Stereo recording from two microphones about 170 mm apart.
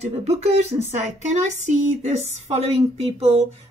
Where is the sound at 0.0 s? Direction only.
40° right (ahead or behind).